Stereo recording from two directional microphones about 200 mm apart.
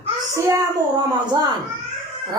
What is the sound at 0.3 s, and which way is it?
A woman's voice, 15° right (ahead or behind).